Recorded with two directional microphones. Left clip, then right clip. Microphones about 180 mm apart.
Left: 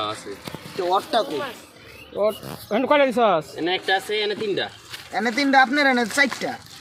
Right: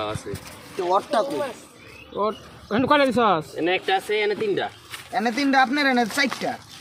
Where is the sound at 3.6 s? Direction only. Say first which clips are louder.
Even; 5° left (ahead or behind).